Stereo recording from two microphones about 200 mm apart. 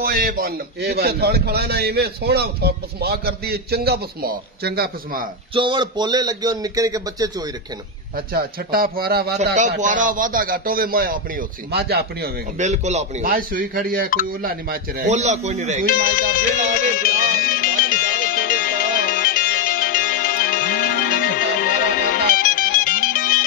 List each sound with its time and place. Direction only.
0.0 s a man's voice: 50° right (ahead or behind)
5.5 s speech: 25° right (ahead or behind)
8.3 s a man's voice: 50° right (ahead or behind)
9.6 s a man's voice: 40° right (ahead or behind)
12.5 s a man's voice: 35° right (ahead or behind)
15.0 s speech: 35° right (ahead or behind)
15.9 s speech: 45° left (ahead or behind)
17.0 s music: 45° left (ahead or behind)